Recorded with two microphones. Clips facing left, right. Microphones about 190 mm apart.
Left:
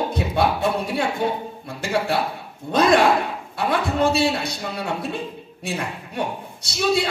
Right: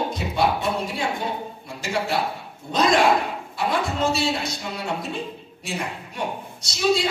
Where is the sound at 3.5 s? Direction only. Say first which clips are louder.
Left 3 dB; 60° left (ahead or behind).